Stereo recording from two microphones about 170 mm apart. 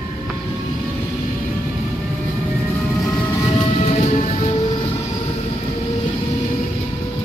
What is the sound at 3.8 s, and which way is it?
Music, 40° left (ahead or behind).